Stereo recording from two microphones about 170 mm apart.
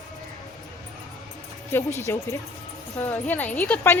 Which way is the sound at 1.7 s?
15° left (ahead or behind).